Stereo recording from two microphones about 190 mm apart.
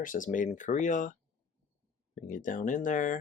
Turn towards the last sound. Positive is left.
turn(degrees=45)  # may be behind; listen again after turning